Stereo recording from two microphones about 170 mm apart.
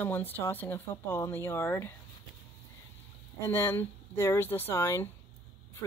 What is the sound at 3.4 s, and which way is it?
Speech, 15° left (ahead or behind).